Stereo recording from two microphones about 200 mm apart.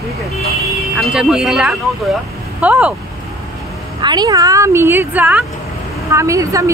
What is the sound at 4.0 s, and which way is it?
Speech, 20° right (ahead or behind).